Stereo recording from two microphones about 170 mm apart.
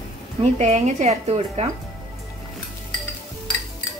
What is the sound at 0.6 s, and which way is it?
A woman's voice, 45° right (ahead or behind).